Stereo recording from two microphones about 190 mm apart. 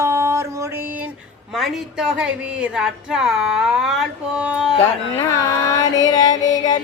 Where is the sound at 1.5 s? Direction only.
Centre (ahead or behind).